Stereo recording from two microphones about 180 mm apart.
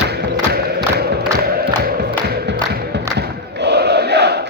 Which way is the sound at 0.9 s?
60° right (ahead or behind).